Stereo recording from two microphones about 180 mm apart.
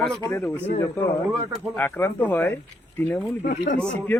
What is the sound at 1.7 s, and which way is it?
Speech, 10° left (ahead or behind).